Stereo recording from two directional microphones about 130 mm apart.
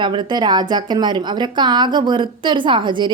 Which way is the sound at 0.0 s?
35° right (ahead or behind).